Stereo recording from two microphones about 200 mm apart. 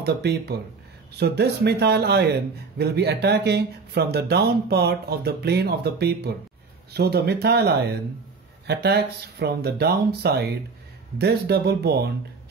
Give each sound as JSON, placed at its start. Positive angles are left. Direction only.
{"t": 0.0, "sound": "speech", "side_deg": -55}